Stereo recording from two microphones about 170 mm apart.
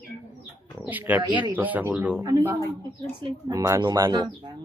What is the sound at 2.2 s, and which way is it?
Speech, 20° right (ahead or behind).